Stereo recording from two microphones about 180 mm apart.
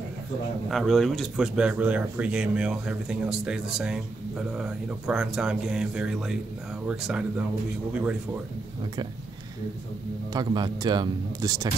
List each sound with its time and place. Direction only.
0.7 s speech: centre (ahead or behind)
10.3 s speech: 25° right (ahead or behind)